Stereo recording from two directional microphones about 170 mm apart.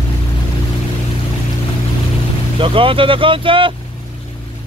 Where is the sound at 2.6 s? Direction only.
30° right (ahead or behind).